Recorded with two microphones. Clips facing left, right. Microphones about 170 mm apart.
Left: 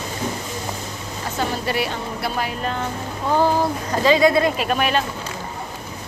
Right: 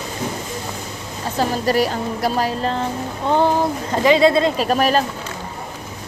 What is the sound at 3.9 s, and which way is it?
Speech, 20° right (ahead or behind).